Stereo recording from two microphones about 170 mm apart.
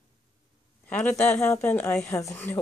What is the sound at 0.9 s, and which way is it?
Speech, 10° left (ahead or behind).